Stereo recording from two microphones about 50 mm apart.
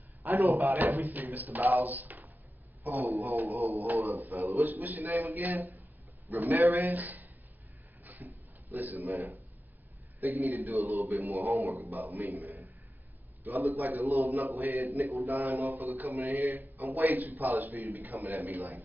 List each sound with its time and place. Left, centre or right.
0.2 s a sound: right
0.7 s a man's voice: right
8.0 s a sound: right
10.2 s a man's voice: right
11.5 s speech: right
11.8 s a man's voice: right
16.1 s a man's voice: right